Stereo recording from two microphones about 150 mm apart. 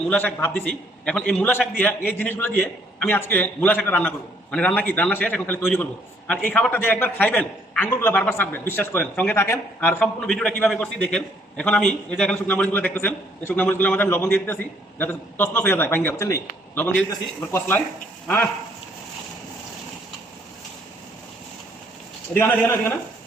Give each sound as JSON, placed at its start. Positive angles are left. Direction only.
{"t": 0.1, "sound": "a man's voice", "side_deg": 15}
{"t": 22.4, "sound": "a man's voice", "side_deg": 15}